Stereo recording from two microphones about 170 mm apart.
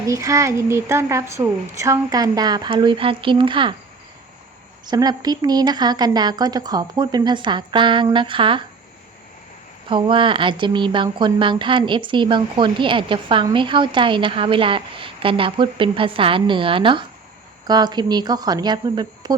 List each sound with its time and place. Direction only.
0.1 s a woman's voice: 20° right (ahead or behind)
4.9 s a woman's voice: 25° right (ahead or behind)
9.9 s a woman's voice: 30° right (ahead or behind)